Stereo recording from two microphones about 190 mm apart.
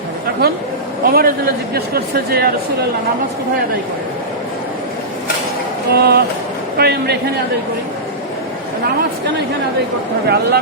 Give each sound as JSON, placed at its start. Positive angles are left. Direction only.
{"t": 1.0, "sound": "speech", "side_deg": -50}
{"t": 5.9, "sound": "a man's voice", "side_deg": -60}
{"t": 10.2, "sound": "a man's voice", "side_deg": -60}